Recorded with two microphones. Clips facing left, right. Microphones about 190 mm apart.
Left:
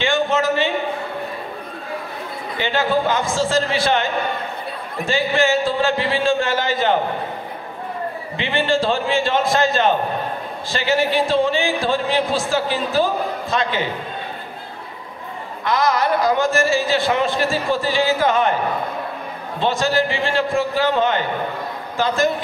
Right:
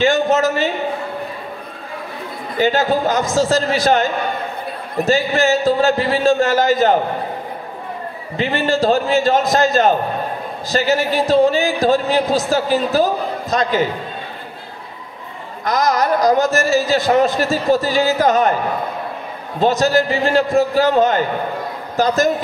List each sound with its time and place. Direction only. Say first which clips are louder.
0.0 s a sound: right 4 dB; 40° right (ahead or behind)
2.5 s speech: right 4 dB; 40° right (ahead or behind)
8.4 s speech: right 3 dB; 40° right (ahead or behind)
15.6 s speech: right 2 dB; 40° right (ahead or behind)
19.6 s a man's voice: right 4 dB; 40° right (ahead or behind)